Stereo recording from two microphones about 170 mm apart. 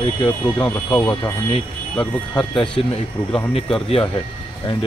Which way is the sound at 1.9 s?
10° left (ahead or behind).